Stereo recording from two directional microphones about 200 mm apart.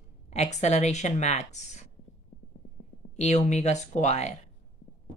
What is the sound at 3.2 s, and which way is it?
Speech, 35° left (ahead or behind).